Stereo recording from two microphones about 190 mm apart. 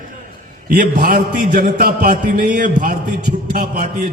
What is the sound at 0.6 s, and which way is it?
A man's voice, 45° right (ahead or behind).